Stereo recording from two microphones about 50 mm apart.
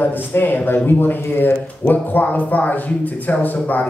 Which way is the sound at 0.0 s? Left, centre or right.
Left.